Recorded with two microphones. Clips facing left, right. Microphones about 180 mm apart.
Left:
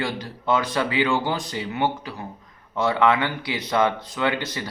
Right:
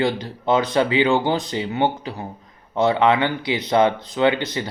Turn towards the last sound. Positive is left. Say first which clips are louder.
# right 6 dB
turn(degrees=-20)  # may be behind; listen again after turning